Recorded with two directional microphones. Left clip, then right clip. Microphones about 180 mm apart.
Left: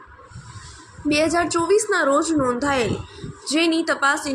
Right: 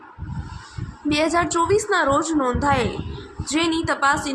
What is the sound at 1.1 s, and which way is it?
A woman's voice, 20° left (ahead or behind).